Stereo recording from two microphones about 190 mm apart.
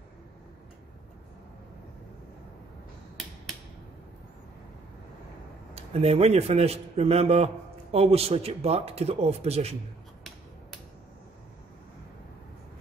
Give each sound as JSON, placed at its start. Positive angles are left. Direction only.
{"t": 5.8, "sound": "a man's voice", "side_deg": -35}